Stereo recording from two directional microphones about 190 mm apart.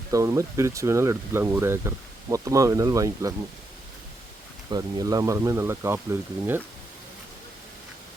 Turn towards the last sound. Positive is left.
turn(degrees=-10)  # may be behind; listen again after turning